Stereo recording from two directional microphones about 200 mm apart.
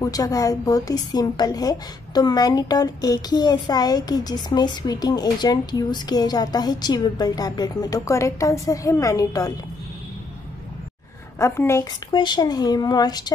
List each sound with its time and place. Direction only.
0.0 s a woman's voice: 15° left (ahead or behind)
11.3 s a woman's voice: 15° left (ahead or behind)